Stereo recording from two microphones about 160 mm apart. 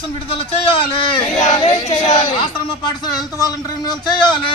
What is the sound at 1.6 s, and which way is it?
Speech, 45° left (ahead or behind).